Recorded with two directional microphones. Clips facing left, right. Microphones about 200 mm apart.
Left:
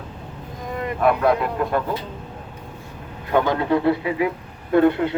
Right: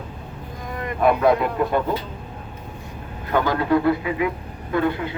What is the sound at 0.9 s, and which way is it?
Speech, centre (ahead or behind).